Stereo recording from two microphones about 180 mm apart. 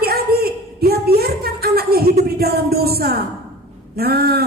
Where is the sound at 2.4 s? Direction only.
60° right (ahead or behind).